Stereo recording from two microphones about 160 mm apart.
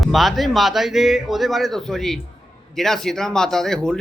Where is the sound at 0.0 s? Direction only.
Centre (ahead or behind).